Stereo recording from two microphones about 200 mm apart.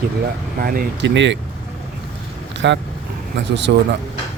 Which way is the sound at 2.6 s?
65° right (ahead or behind).